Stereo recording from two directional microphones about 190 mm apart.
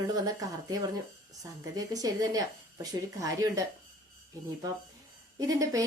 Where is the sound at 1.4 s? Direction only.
20° right (ahead or behind).